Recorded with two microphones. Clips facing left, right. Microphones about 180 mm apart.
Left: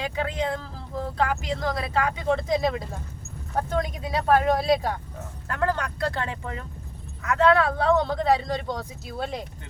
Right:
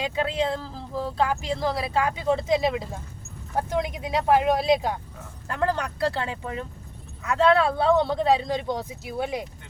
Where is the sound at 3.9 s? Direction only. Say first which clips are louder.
Even; 20° right (ahead or behind).